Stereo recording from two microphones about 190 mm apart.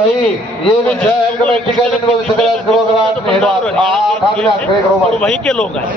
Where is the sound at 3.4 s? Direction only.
Centre (ahead or behind).